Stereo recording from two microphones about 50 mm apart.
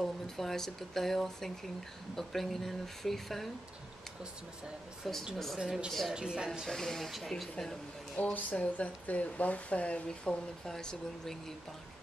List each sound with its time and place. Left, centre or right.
0.0 s speech: centre
5.1 s speech: centre
5.6 s speech: centre
5.9 s speech: centre
6.1 s speech: centre
6.7 s speech: centre
7.1 s speech: centre
8.2 s speech: left
10.0 s speech: centre